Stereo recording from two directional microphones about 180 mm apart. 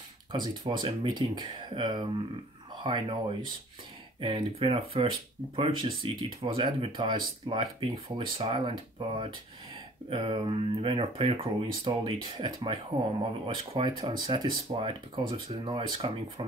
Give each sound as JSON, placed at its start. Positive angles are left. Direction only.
{"t": 0.3, "sound": "speech", "side_deg": -25}